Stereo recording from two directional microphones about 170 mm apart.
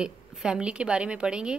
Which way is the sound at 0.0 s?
5° right (ahead or behind).